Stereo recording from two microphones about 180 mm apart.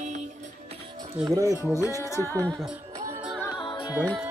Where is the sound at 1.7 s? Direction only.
15° left (ahead or behind).